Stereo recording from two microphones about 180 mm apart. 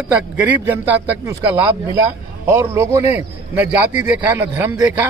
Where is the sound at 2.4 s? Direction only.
15° right (ahead or behind).